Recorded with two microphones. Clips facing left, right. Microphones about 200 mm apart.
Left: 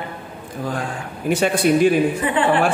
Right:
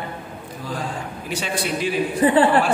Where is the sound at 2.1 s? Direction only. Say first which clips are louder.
Right 3 dB; 35° right (ahead or behind).